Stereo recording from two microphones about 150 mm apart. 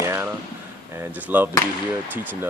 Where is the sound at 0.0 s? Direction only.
20° right (ahead or behind).